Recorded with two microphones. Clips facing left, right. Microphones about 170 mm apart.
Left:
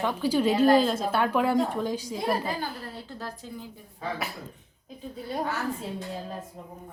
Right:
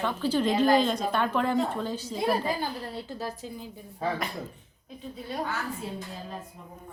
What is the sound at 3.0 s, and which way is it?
Speech, 15° right (ahead or behind).